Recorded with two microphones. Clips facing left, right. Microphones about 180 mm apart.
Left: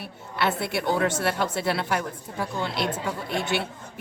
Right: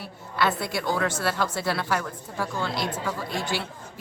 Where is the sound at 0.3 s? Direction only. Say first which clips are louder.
Even; 25° left (ahead or behind).